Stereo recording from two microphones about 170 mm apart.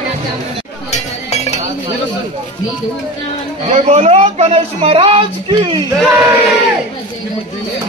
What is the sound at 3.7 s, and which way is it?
Speech, 40° right (ahead or behind).